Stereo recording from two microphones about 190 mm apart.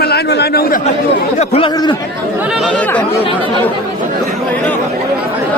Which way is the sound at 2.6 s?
5° left (ahead or behind).